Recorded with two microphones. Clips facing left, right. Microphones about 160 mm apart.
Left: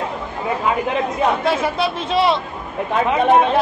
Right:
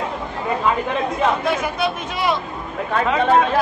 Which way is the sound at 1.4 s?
30° left (ahead or behind).